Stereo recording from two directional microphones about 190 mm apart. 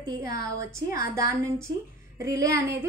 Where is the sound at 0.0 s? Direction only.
20° right (ahead or behind).